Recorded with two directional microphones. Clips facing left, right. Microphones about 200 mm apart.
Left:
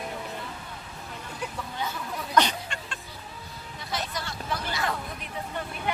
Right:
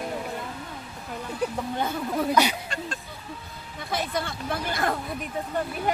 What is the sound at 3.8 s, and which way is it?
Speech, 55° right (ahead or behind).